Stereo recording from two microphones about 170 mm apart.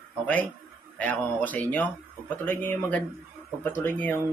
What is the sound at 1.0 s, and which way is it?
Speech, 10° left (ahead or behind).